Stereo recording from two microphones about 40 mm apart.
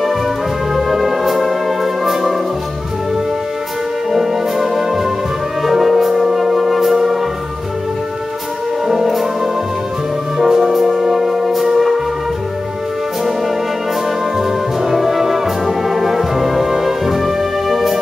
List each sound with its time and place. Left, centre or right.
0.7 s music: centre
4.1 s music: centre
8.8 s music: centre
14.4 s brass instrument: centre